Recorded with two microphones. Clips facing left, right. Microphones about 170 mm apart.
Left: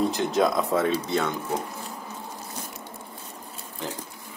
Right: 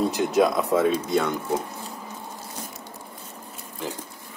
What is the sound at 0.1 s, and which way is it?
Speech, 15° right (ahead or behind).